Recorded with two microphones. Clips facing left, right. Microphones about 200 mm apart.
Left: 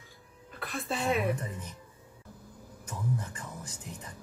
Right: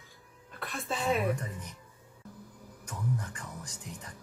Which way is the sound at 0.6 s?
Centre (ahead or behind).